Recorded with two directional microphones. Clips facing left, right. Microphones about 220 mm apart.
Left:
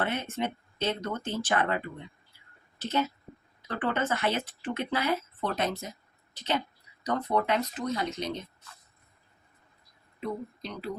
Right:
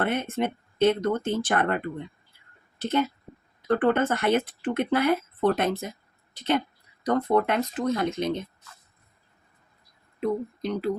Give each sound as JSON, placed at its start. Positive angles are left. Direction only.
{"t": 0.0, "sound": "speech", "side_deg": -55}
{"t": 10.2, "sound": "speech", "side_deg": -55}